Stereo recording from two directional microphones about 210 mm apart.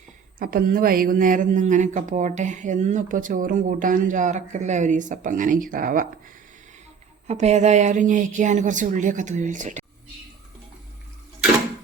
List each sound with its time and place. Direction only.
0.3 s speech: 40° right (ahead or behind)
7.3 s speech: 35° right (ahead or behind)